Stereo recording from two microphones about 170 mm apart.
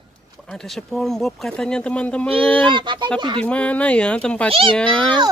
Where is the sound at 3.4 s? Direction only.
5° left (ahead or behind).